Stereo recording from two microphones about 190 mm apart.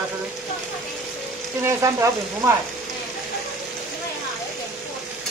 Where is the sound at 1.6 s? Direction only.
15° right (ahead or behind).